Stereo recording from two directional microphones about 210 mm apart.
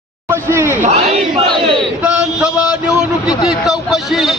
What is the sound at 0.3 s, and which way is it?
Speech, 10° right (ahead or behind).